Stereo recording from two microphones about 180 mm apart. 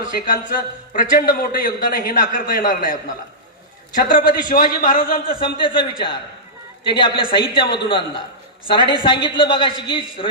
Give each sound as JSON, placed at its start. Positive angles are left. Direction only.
{"t": 0.0, "sound": "a man's voice", "side_deg": 50}
{"t": 3.9, "sound": "a man's voice", "side_deg": 50}
{"t": 5.3, "sound": "a man's voice", "side_deg": 30}